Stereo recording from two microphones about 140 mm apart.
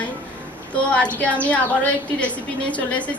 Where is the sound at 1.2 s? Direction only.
10° left (ahead or behind).